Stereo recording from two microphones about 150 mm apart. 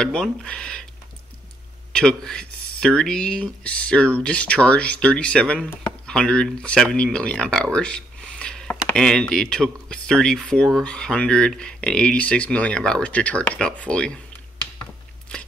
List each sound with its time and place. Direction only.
0.0 s speech: 5° left (ahead or behind)
1.9 s speech: 5° left (ahead or behind)